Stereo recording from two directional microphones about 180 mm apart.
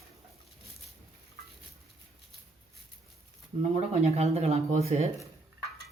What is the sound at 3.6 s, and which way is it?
Speech, 35° right (ahead or behind).